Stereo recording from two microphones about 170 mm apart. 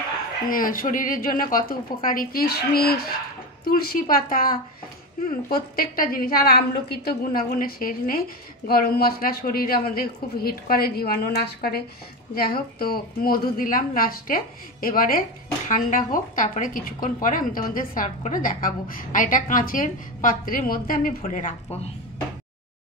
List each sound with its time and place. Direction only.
0.5 s a woman's voice: 55° left (ahead or behind)